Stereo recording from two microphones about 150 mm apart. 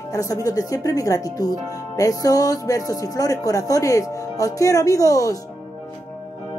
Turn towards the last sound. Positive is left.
turn(degrees=20)  # may be behind; listen again after turning